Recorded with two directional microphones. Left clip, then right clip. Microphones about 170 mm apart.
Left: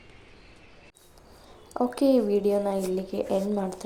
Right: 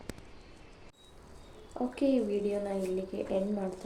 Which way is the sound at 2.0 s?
25° left (ahead or behind).